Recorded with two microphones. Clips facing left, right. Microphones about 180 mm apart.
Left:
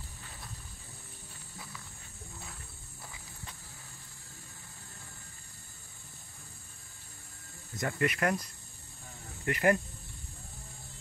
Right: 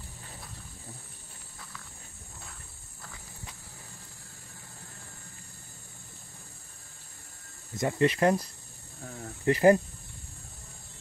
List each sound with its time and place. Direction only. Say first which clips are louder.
7.7 s speech: right 6 dB; 25° right (ahead or behind)